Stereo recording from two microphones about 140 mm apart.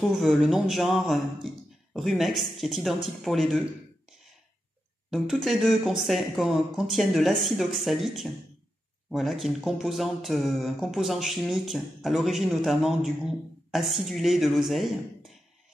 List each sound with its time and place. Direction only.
0.1 s speech: centre (ahead or behind)
5.1 s speech: centre (ahead or behind)